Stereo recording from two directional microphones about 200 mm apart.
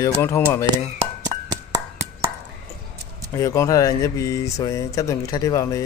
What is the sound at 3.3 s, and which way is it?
Speech, 15° left (ahead or behind).